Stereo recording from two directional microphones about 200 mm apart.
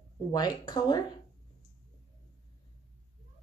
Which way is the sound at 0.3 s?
20° left (ahead or behind).